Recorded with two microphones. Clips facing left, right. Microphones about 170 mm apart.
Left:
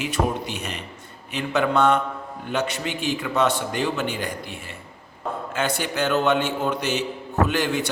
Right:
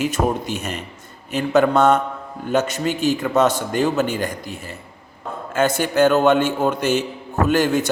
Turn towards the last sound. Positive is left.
turn(degrees=-45)  # may be behind; listen again after turning